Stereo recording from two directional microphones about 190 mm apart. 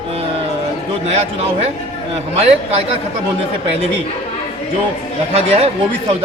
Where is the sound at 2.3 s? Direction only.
30° right (ahead or behind).